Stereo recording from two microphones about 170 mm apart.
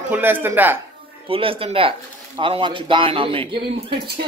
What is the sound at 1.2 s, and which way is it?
Speech, 30° right (ahead or behind).